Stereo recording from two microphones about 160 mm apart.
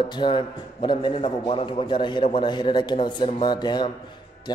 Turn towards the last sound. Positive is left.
turn(degrees=25)  # may be behind; listen again after turning